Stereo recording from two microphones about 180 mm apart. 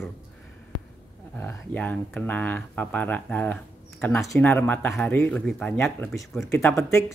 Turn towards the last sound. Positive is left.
turn(degrees=15)  # may be behind; listen again after turning